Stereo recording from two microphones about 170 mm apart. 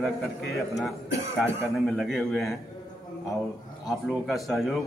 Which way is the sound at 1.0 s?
15° right (ahead or behind).